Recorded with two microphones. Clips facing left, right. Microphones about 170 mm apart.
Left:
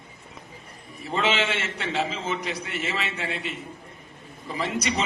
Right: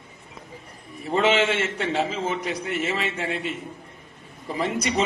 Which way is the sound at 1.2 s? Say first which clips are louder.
Right 5 dB; 50° right (ahead or behind).